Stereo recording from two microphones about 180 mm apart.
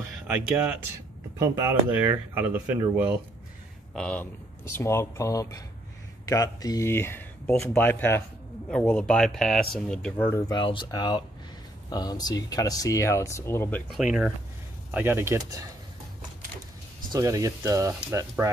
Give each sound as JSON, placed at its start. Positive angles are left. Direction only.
{"t": 1.4, "sound": "speech", "side_deg": -10}
{"t": 3.9, "sound": "speech", "side_deg": 5}
{"t": 13.9, "sound": "speech", "side_deg": -5}
{"t": 17.1, "sound": "speech", "side_deg": -20}